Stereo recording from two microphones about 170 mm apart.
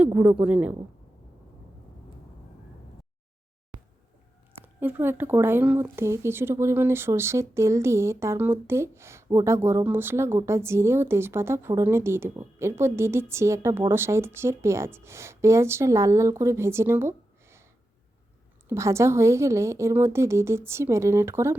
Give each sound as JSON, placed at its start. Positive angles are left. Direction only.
{"t": 0.0, "sound": "speech", "side_deg": -10}
{"t": 4.6, "sound": "speech", "side_deg": -10}
{"t": 18.7, "sound": "speech", "side_deg": -15}